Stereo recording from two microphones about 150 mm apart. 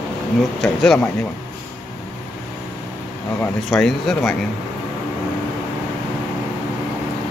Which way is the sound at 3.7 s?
Centre (ahead or behind).